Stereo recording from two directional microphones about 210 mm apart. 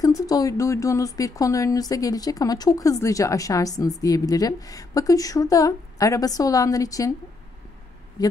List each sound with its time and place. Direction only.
0.0 s speech: 15° left (ahead or behind)
8.2 s speech: 20° left (ahead or behind)